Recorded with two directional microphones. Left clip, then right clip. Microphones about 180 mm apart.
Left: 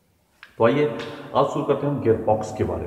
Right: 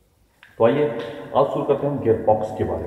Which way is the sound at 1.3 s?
5° left (ahead or behind).